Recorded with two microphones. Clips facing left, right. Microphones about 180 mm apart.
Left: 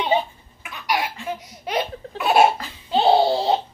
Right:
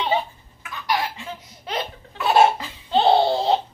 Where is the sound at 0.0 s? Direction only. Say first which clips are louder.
Left 2 dB; 15° left (ahead or behind).